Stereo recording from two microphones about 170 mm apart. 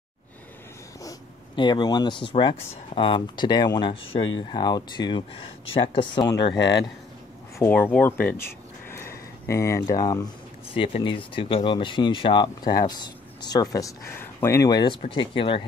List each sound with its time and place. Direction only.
1.0 s speech: 25° left (ahead or behind)
6.5 s speech: 90° left
7.5 s speech: 15° left (ahead or behind)
9.5 s speech: 15° left (ahead or behind)